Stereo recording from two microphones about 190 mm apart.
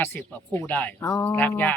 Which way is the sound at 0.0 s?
10° left (ahead or behind).